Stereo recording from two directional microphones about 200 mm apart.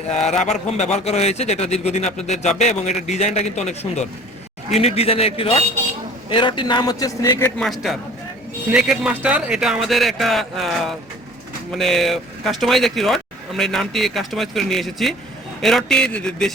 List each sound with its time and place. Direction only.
0.1 s a man's voice: 35° left (ahead or behind); by 7.5 s 15° left (ahead or behind)
7.6 s speech: centre (ahead or behind)